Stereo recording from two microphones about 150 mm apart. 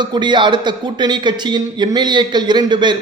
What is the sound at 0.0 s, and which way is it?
A man's voice, 30° right (ahead or behind).